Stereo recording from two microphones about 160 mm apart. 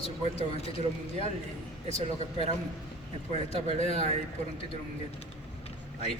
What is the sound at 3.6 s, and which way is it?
Speech, 45° right (ahead or behind).